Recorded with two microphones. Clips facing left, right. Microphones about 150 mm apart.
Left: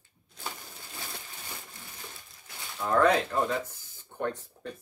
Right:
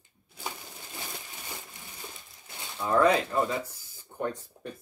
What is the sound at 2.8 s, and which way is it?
Speech, 10° right (ahead or behind).